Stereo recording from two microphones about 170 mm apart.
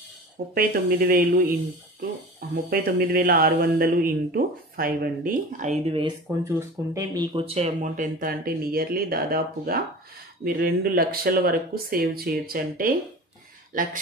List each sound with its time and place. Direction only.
0.6 s speech: 65° right (ahead or behind); by 5.9 s 45° right (ahead or behind)
6.4 s speech: 20° right (ahead or behind)
7.3 s speech: 35° right (ahead or behind); by 13.9 s 50° right (ahead or behind)